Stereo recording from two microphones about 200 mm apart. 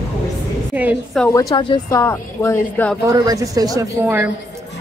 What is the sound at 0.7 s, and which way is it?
Speech, 10° right (ahead or behind).